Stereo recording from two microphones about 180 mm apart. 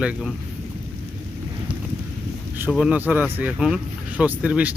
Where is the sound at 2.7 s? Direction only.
5° right (ahead or behind).